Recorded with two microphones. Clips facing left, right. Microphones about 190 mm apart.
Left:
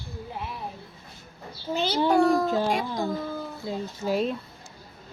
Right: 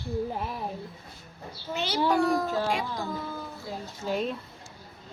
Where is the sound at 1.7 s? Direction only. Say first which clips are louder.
Left 4 dB; 30° left (ahead or behind).